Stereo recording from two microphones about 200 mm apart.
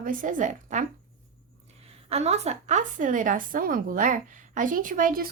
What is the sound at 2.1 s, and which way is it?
A woman's voice, 30° right (ahead or behind).